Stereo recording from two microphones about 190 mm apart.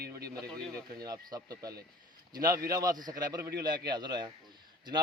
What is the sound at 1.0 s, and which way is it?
Speech, 20° right (ahead or behind).